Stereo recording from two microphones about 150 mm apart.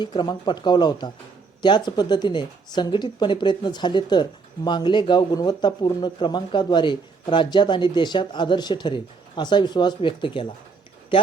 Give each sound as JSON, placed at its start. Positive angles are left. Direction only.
{"t": 0.0, "sound": "speech", "side_deg": 30}